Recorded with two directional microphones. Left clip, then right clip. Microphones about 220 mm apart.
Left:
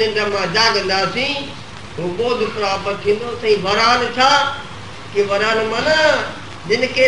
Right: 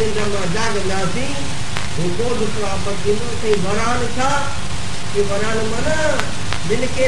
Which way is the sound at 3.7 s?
25° right (ahead or behind).